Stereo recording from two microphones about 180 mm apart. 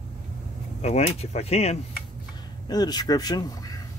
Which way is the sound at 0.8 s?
35° left (ahead or behind).